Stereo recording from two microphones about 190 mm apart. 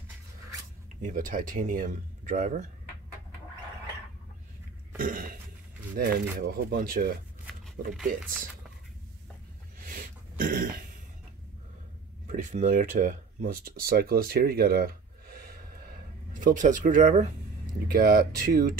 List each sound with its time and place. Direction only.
1.0 s speech: 45° right (ahead or behind)
4.9 s cough: 45° right (ahead or behind)
6.0 s speech: 55° right (ahead or behind)
9.8 s a sound: 45° right (ahead or behind)
12.3 s speech: 40° right (ahead or behind)
17.9 s speech: 50° right (ahead or behind)